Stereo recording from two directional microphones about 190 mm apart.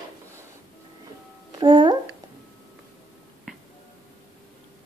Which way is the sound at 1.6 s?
25° right (ahead or behind).